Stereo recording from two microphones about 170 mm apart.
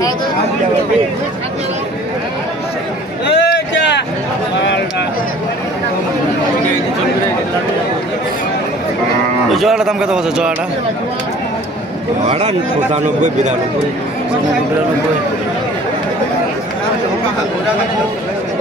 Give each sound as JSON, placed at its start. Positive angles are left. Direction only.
{"t": 3.3, "sound": "a sound", "side_deg": 85}
{"t": 9.5, "sound": "a man's voice", "side_deg": 0}
{"t": 12.3, "sound": "speech", "side_deg": -40}